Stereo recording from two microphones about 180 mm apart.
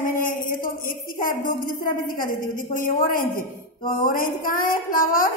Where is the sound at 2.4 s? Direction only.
50° left (ahead or behind).